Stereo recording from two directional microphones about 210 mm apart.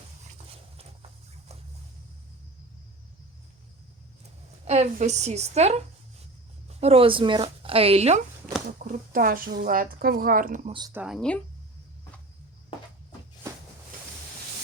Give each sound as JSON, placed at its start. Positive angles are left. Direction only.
{"t": 4.6, "sound": "speech", "side_deg": -30}
{"t": 8.8, "sound": "speech", "side_deg": -40}
{"t": 10.7, "sound": "speech", "side_deg": -20}
{"t": 10.9, "sound": "speech", "side_deg": 0}